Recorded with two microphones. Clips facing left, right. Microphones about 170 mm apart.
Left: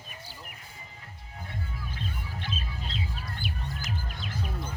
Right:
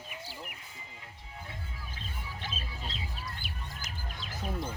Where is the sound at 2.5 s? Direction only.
40° right (ahead or behind).